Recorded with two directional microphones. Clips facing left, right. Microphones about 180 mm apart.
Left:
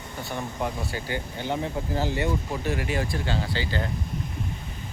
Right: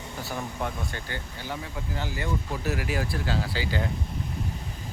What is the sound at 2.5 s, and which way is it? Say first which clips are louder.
Speech: left 2 dB; 5° right (ahead or behind).